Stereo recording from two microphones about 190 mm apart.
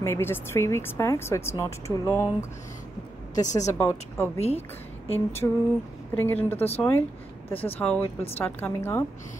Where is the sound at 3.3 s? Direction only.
40° left (ahead or behind).